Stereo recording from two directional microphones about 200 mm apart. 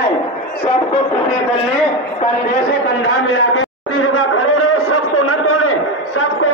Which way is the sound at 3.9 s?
90° left.